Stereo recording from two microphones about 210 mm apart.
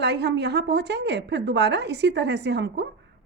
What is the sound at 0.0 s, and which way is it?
A woman's voice, 55° right (ahead or behind).